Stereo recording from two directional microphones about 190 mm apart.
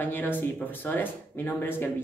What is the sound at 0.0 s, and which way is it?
Speech, 10° left (ahead or behind).